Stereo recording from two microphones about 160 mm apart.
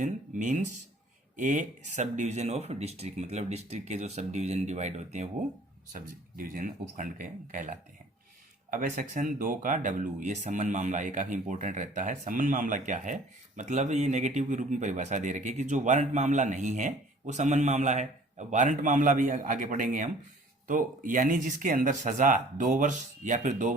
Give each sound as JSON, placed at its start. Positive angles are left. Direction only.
{"t": 0.0, "sound": "speech", "side_deg": -50}
{"t": 5.9, "sound": "speech", "side_deg": -60}